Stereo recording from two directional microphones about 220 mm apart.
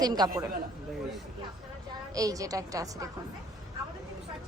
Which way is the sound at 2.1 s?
15° right (ahead or behind).